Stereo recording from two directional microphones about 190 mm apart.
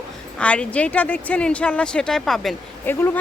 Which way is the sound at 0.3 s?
5° left (ahead or behind).